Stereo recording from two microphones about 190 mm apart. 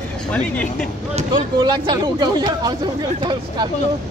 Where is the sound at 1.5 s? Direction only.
25° right (ahead or behind).